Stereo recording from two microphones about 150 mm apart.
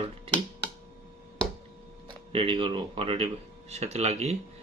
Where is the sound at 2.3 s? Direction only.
35° right (ahead or behind).